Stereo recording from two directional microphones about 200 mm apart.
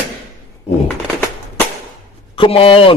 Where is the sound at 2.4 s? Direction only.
30° left (ahead or behind).